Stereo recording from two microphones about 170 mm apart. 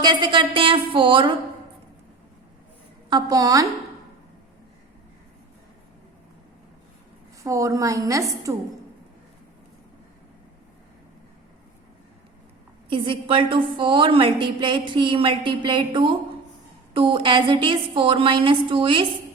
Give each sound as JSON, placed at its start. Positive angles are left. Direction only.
{"t": 0.0, "sound": "a woman's voice", "side_deg": -25}
{"t": 3.1, "sound": "a woman's voice", "side_deg": -25}
{"t": 7.4, "sound": "a woman's voice", "side_deg": -20}
{"t": 12.9, "sound": "a woman's voice", "side_deg": -30}